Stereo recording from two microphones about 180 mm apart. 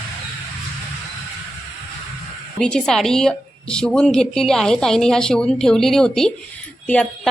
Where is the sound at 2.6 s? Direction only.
5° left (ahead or behind).